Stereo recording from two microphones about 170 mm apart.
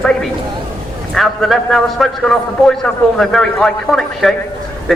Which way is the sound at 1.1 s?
Centre (ahead or behind).